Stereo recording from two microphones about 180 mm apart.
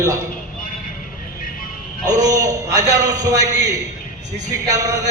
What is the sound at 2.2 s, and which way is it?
Speech, 20° right (ahead or behind).